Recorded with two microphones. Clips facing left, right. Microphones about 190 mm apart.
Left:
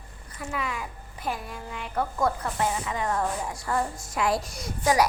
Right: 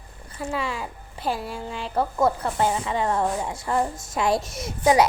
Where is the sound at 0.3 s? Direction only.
30° right (ahead or behind).